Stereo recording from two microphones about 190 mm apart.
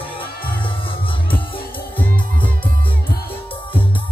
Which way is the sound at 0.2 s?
25° left (ahead or behind).